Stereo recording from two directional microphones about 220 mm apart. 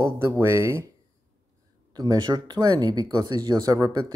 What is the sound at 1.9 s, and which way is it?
Speech, 15° right (ahead or behind).